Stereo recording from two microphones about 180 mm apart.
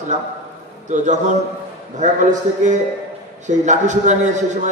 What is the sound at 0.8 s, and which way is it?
Speech, 40° right (ahead or behind).